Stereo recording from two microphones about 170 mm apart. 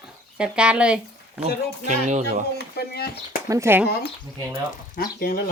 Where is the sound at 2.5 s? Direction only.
70° left (ahead or behind).